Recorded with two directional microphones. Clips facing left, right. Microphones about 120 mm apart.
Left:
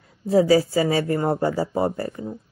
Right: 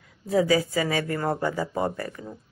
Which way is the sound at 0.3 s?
35° left (ahead or behind).